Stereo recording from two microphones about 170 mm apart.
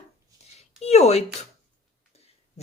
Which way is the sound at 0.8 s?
40° left (ahead or behind).